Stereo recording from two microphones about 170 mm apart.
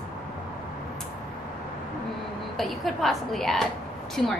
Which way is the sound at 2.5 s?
Centre (ahead or behind).